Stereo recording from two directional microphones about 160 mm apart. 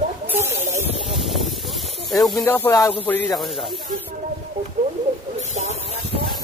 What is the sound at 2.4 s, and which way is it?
Speech, 15° left (ahead or behind).